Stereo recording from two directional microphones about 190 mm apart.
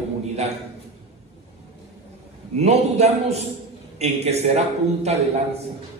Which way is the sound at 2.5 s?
35° right (ahead or behind).